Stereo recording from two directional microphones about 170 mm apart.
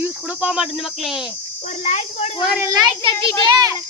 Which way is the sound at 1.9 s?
40° left (ahead or behind).